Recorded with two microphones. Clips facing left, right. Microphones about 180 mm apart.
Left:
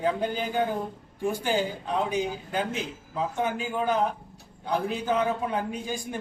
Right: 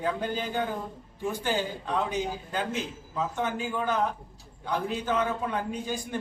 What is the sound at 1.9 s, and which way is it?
A man's voice, 15° left (ahead or behind).